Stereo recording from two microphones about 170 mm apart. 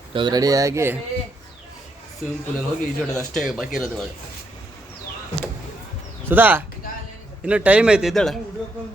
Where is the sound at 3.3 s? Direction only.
Centre (ahead or behind).